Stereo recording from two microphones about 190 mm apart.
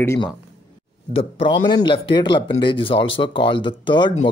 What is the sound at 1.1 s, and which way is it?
Speech, 25° left (ahead or behind).